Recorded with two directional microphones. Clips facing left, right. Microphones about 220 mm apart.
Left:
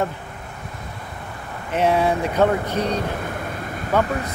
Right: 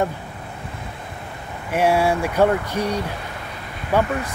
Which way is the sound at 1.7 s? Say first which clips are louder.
Right 1 dB; 10° right (ahead or behind).